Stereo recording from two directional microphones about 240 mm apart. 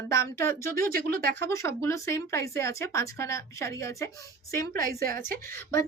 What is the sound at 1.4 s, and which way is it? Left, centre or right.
Speech, centre.